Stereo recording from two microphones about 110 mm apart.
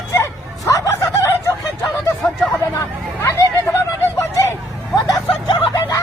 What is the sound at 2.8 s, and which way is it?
Chatter, 30° left (ahead or behind).